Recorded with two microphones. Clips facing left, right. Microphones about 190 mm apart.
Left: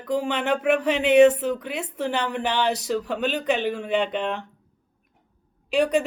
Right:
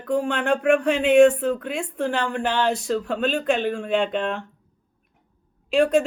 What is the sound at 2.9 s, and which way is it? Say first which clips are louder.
Speech: right 2 dB; centre (ahead or behind).